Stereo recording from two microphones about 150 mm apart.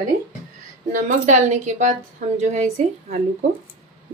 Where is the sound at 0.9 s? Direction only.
55° right (ahead or behind).